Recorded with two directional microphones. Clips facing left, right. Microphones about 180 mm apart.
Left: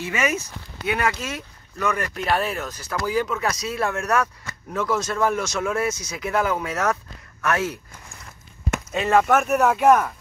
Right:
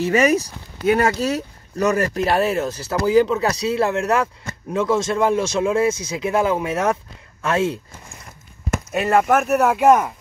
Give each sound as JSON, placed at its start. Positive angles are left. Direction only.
{"t": 0.0, "sound": "speech", "side_deg": -40}
{"t": 8.9, "sound": "speech", "side_deg": -5}